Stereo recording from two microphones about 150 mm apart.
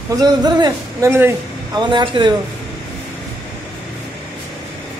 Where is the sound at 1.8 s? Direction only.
30° right (ahead or behind).